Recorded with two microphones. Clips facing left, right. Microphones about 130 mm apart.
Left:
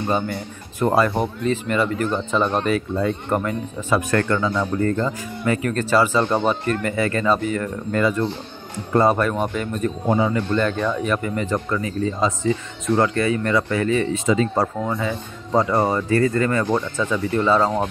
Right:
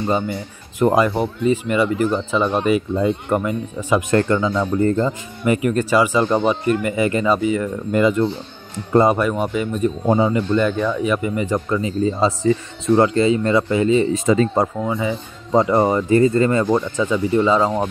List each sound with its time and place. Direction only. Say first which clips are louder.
0.1 s speech: right 2 dB; 10° right (ahead or behind)
4.1 s speech: right 3 dB; 25° right (ahead or behind)
5.4 s speech: right 4 dB; 15° right (ahead or behind)
10.0 s speech: right 2 dB; 25° right (ahead or behind)
10.3 s speech: right 3 dB; 10° right (ahead or behind)
14.1 s speech: right 3 dB; 40° right (ahead or behind)
14.9 s speech: right 2 dB; 15° right (ahead or behind)